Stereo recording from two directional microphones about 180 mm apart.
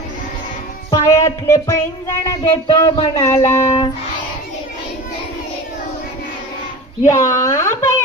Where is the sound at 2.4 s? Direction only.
35° left (ahead or behind).